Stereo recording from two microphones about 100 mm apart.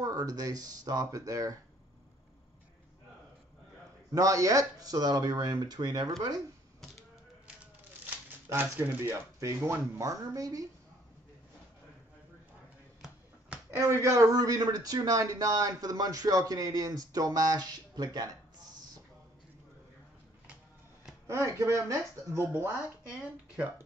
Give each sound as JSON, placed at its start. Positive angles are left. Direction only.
{"t": 0.0, "sound": "speech", "side_deg": -40}
{"t": 4.1, "sound": "speech", "side_deg": -35}
{"t": 8.5, "sound": "speech", "side_deg": -25}
{"t": 13.7, "sound": "speech", "side_deg": -30}
{"t": 21.3, "sound": "speech", "side_deg": -30}
{"t": 23.0, "sound": "speech", "side_deg": -10}